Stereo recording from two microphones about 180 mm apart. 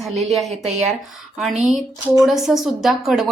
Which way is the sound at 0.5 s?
35° right (ahead or behind).